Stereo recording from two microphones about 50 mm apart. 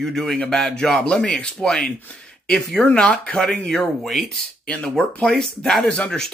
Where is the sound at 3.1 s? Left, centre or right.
Left.